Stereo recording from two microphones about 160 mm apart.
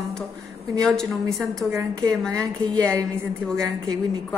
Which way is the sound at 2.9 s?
15° right (ahead or behind).